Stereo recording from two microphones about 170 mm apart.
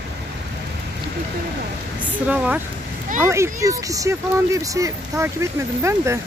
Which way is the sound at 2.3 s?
10° right (ahead or behind).